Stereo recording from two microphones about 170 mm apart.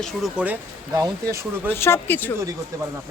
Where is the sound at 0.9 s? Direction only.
20° right (ahead or behind).